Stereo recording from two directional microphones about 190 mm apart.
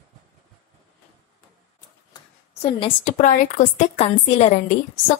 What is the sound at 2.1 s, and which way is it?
A woman's voice, 30° left (ahead or behind).